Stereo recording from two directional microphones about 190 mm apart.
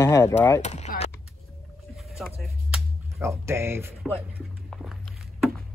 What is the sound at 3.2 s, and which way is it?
Speech, 15° right (ahead or behind).